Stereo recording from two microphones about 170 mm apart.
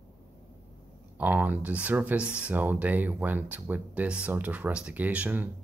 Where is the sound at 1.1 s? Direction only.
10° right (ahead or behind).